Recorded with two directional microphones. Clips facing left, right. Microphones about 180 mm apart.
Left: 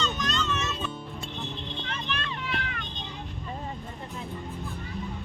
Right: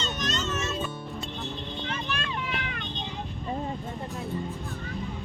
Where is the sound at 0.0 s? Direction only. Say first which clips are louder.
Left 1 dB; 45° right (ahead or behind).